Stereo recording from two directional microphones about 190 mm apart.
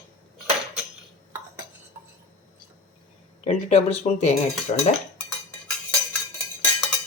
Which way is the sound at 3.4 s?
35° left (ahead or behind).